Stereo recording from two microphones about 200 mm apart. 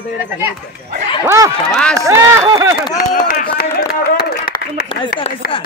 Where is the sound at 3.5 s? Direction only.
50° left (ahead or behind).